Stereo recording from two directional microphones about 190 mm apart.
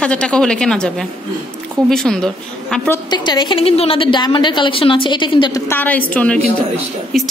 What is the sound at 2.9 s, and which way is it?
A woman's voice, 20° left (ahead or behind).